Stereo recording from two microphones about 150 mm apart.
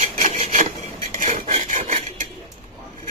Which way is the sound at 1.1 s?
55° right (ahead or behind).